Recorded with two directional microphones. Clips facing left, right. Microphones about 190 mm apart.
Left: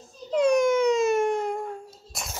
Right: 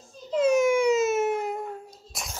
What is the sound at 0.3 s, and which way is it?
Baby cry, 5° right (ahead or behind).